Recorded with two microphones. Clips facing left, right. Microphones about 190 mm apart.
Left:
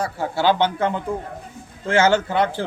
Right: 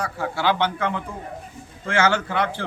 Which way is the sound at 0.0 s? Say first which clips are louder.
Left 3 dB; 25° left (ahead or behind).